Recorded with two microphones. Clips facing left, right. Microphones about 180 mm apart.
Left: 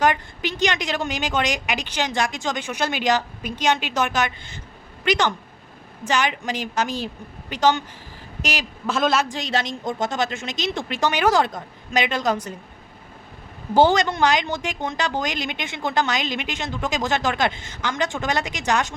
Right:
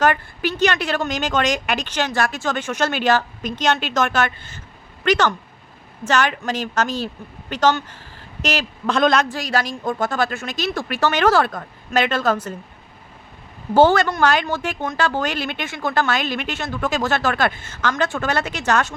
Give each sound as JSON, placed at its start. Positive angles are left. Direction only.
{"t": 0.0, "sound": "speech", "side_deg": 15}
{"t": 9.3, "sound": "a woman's voice", "side_deg": 25}
{"t": 13.7, "sound": "speech", "side_deg": 15}